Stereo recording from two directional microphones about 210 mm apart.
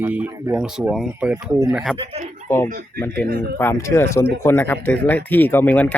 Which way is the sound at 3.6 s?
15° left (ahead or behind).